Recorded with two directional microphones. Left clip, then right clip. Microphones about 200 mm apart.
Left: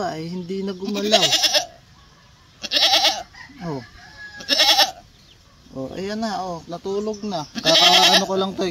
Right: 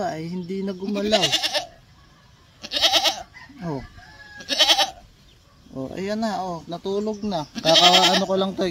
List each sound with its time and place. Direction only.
0.0 s speech: 5° right (ahead or behind)
0.8 s speech: 30° left (ahead or behind)
2.6 s goat: 15° left (ahead or behind)
4.4 s goat: 15° left (ahead or behind)
5.8 s speech: 20° right (ahead or behind)
7.5 s speech: 15° left (ahead or behind)
8.3 s speech: 15° right (ahead or behind)